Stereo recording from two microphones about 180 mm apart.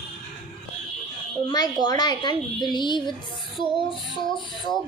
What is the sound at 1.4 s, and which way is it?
A woman's voice, 25° left (ahead or behind).